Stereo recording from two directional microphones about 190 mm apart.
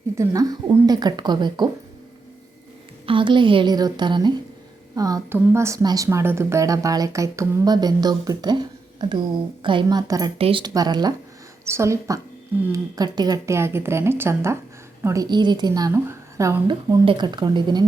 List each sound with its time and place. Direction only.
0.2 s a woman's voice: 15° right (ahead or behind)
3.1 s a woman's voice: 25° right (ahead or behind)